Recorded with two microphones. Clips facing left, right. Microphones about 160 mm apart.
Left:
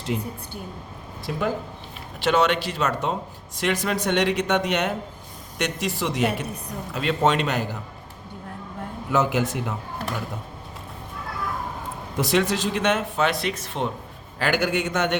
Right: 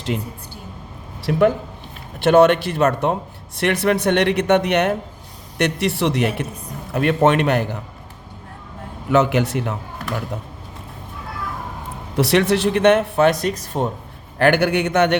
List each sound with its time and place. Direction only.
1.2 s a man's voice: 70° right (ahead or behind)
2.2 s speech: 55° right (ahead or behind)
9.1 s a man's voice: 75° right (ahead or behind)
12.1 s speech: 70° right (ahead or behind); by 13.9 s 40° right (ahead or behind)
14.3 s speech: 60° right (ahead or behind)